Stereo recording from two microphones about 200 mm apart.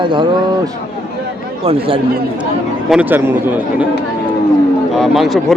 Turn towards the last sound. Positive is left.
turn(degrees=0)  # may be behind; listen again after turning